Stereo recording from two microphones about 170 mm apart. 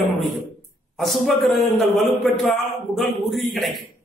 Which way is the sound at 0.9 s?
Centre (ahead or behind).